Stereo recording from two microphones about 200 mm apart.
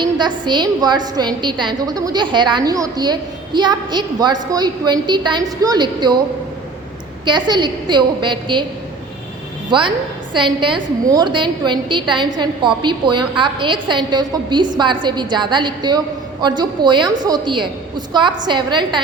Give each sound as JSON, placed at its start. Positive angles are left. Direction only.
{"t": 0.0, "sound": "a woman's voice", "side_deg": -20}
{"t": 7.3, "sound": "a woman's voice", "side_deg": -20}
{"t": 9.6, "sound": "a woman's voice", "side_deg": -25}